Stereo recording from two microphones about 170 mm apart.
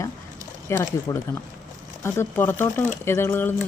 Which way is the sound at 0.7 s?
15° left (ahead or behind).